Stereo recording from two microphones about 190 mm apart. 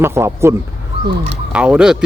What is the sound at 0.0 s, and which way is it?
Speech, 15° right (ahead or behind).